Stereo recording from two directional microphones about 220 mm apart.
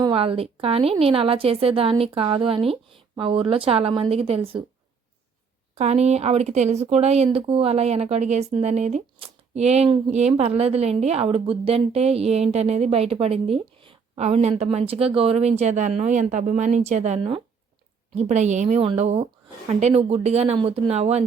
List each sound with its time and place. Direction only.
0.0 s speech: 25° right (ahead or behind)
5.7 s speech: 30° right (ahead or behind)